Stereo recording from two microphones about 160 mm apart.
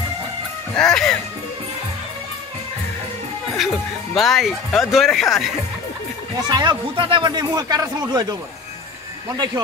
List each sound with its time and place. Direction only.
0.7 s speech: 5° left (ahead or behind)
3.5 s speech: centre (ahead or behind)
6.5 s speech: 25° right (ahead or behind)